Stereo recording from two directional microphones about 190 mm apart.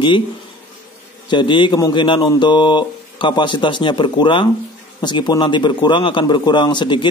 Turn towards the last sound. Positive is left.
turn(degrees=25)  # may be behind; listen again after turning